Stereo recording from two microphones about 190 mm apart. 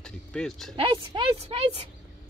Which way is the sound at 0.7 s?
30° right (ahead or behind).